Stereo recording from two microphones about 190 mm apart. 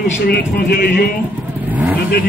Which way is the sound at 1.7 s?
10° right (ahead or behind).